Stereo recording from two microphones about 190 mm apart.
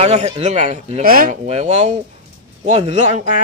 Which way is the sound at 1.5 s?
35° right (ahead or behind).